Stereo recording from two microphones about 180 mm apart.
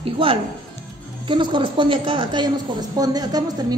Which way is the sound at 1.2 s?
25° right (ahead or behind).